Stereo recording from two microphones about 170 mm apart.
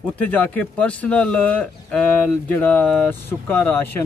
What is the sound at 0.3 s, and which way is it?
Speech, 10° left (ahead or behind).